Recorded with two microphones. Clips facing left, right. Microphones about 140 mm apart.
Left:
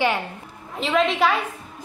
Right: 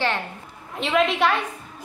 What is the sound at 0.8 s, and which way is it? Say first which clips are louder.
Speech: even; centre (ahead or behind).